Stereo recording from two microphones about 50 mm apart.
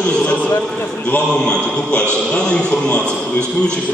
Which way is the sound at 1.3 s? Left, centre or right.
Centre.